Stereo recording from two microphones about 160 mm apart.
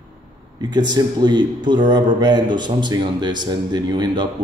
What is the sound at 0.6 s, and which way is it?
Speech, 25° right (ahead or behind).